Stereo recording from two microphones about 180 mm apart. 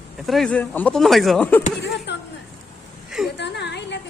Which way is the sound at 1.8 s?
70° left (ahead or behind).